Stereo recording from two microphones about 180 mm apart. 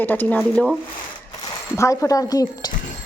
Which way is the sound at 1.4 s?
15° left (ahead or behind).